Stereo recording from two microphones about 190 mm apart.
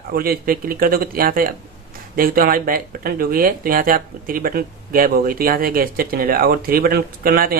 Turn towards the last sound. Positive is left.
turn(degrees=-50)  # may be behind; listen again after turning